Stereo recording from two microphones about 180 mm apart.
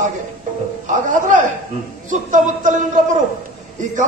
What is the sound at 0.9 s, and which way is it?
A man's voice, 45° right (ahead or behind).